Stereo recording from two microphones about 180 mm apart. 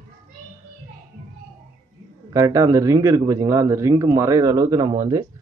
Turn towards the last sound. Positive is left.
turn(degrees=-20)  # may be behind; listen again after turning